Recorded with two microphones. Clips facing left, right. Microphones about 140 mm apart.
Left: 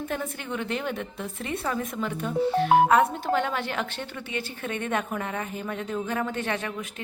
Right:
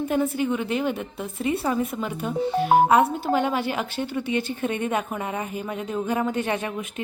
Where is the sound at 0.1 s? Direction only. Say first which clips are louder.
Right 8 dB; 10° right (ahead or behind).